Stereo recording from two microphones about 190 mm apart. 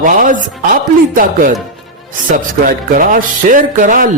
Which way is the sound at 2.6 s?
45° right (ahead or behind).